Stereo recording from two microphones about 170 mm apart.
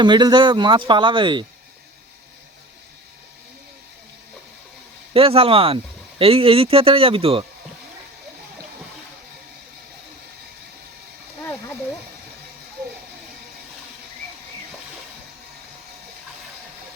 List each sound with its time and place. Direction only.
0.0 s speech: 25° right (ahead or behind)
5.1 s speech: 35° right (ahead or behind)